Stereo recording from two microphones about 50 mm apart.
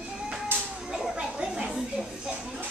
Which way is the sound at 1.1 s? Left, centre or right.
Centre.